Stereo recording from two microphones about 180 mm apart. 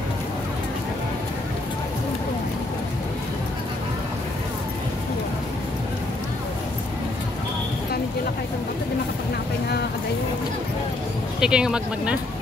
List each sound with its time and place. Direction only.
11.3 s speech: 5° right (ahead or behind)